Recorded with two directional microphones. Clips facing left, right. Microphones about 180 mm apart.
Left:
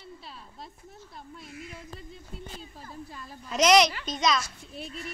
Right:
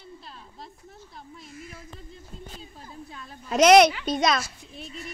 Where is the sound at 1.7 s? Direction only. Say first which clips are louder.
Left 1 dB; 5° right (ahead or behind).